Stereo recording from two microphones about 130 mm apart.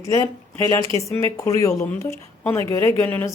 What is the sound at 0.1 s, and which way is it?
Speech, 25° left (ahead or behind).